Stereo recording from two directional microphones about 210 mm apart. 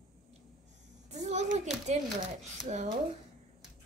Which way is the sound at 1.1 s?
35° right (ahead or behind).